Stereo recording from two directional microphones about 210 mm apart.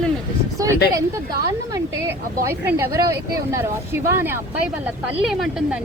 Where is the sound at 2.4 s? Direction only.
10° right (ahead or behind).